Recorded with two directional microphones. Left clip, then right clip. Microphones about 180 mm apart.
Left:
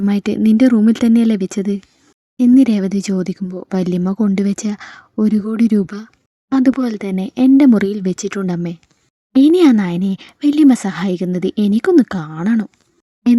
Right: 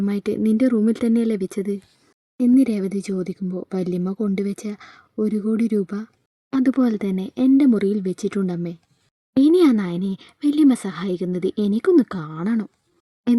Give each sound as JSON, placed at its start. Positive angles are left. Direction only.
{"t": 0.0, "sound": "speech", "side_deg": 40}
{"t": 7.2, "sound": "speech", "side_deg": 70}
{"t": 7.5, "sound": "speech", "side_deg": 40}
{"t": 9.3, "sound": "speech", "side_deg": 75}
{"t": 9.6, "sound": "speech", "side_deg": 35}
{"t": 9.9, "sound": "a woman's voice", "side_deg": 90}
{"t": 10.4, "sound": "speech", "side_deg": 80}
{"t": 10.7, "sound": "speech", "side_deg": 35}
{"t": 11.4, "sound": "speech", "side_deg": 75}
{"t": 11.9, "sound": "speech", "side_deg": 35}